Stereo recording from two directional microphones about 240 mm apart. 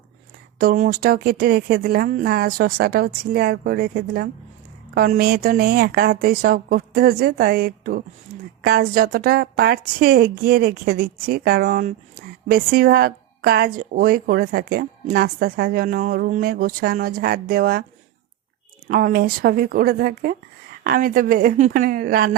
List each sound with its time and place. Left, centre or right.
0.6 s a woman's voice: right
18.9 s a woman's voice: right